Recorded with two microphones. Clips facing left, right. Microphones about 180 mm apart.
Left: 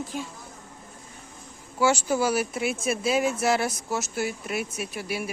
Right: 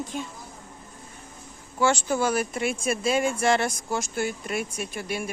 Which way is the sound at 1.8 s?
10° left (ahead or behind).